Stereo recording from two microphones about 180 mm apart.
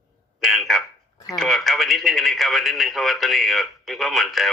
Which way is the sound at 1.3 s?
Centre (ahead or behind).